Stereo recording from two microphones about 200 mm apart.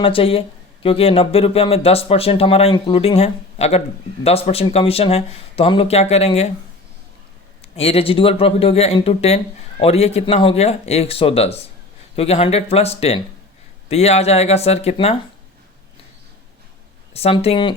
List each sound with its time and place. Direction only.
0.0 s speech: 25° left (ahead or behind)
7.8 s speech: 30° left (ahead or behind)
17.2 s speech: 30° left (ahead or behind)